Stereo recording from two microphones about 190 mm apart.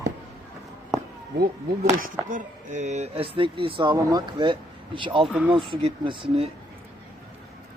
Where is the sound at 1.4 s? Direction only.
50° right (ahead or behind); by 5.3 s 25° right (ahead or behind).